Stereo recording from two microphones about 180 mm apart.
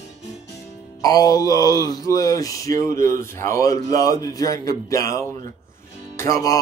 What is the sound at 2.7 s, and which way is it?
Speech, 50° right (ahead or behind).